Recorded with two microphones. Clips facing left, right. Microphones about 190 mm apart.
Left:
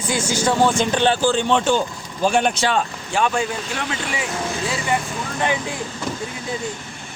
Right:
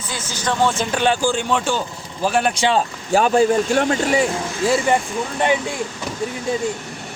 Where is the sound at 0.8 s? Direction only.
10° right (ahead or behind).